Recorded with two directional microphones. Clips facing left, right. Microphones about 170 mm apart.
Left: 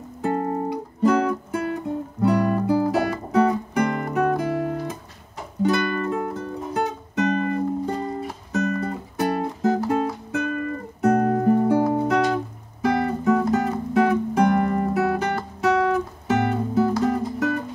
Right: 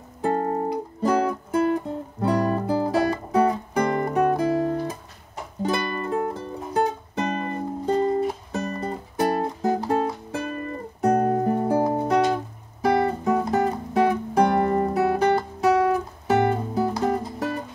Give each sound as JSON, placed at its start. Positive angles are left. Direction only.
{"t": 0.2, "sound": "guitar", "side_deg": -35}
{"t": 1.0, "sound": "music", "side_deg": -35}
{"t": 9.6, "sound": "music", "side_deg": -15}
{"t": 9.8, "sound": "music", "side_deg": -35}